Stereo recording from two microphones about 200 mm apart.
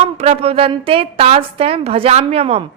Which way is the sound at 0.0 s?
30° right (ahead or behind).